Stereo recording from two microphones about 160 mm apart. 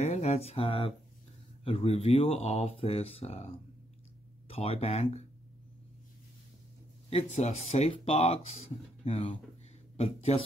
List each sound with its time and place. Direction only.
0.0 s speech: 45° left (ahead or behind)
7.1 s speech: 40° left (ahead or behind)